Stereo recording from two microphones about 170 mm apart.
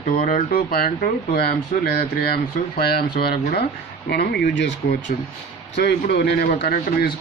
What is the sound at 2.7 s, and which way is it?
Speech, 65° left (ahead or behind).